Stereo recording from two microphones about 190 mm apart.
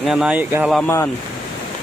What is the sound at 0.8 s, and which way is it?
Speech, 15° left (ahead or behind).